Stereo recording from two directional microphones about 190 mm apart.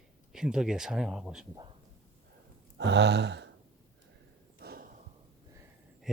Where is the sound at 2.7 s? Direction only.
65° right (ahead or behind).